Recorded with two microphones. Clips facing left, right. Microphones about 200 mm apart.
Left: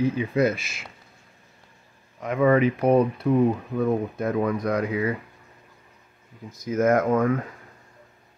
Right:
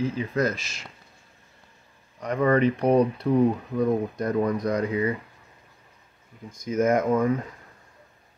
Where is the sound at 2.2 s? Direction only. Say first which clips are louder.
Left 2 dB; 5° left (ahead or behind).